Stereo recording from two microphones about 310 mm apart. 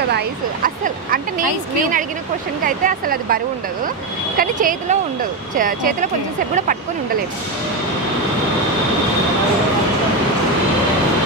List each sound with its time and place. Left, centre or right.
0.1 s speech: right
4.4 s speech: right